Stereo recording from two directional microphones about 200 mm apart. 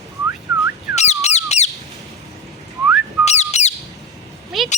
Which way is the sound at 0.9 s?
35° left (ahead or behind).